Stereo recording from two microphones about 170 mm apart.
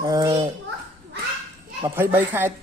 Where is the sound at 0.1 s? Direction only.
20° right (ahead or behind).